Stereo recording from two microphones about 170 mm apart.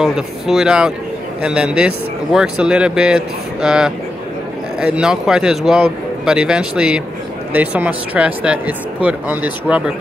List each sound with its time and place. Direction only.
0.0 s a man's voice: 5° right (ahead or behind)